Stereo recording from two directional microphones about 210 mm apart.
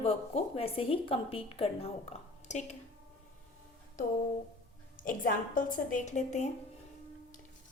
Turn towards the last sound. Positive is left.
turn(degrees=35)  # may be behind; listen again after turning